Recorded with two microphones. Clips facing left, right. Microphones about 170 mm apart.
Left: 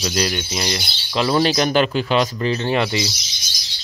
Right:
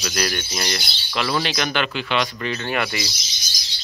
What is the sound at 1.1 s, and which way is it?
A man's voice, 30° left (ahead or behind).